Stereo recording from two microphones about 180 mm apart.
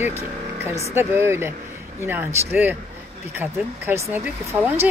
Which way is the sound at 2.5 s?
10° right (ahead or behind).